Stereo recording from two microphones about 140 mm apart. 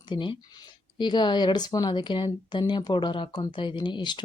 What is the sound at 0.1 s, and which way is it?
Speech, 35° left (ahead or behind).